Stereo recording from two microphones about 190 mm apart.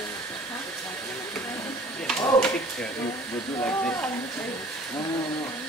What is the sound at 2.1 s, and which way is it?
Speech, 5° left (ahead or behind).